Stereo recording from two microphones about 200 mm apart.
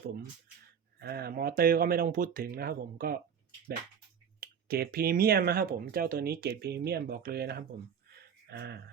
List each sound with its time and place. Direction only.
0.9 s speech: 55° right (ahead or behind)
4.4 s speech: 50° right (ahead or behind)
8.1 s a sound: 55° right (ahead or behind)